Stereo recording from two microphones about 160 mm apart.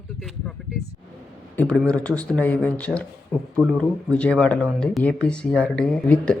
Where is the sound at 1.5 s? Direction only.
5° left (ahead or behind).